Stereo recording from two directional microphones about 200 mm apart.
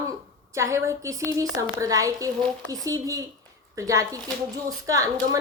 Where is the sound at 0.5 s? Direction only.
15° right (ahead or behind).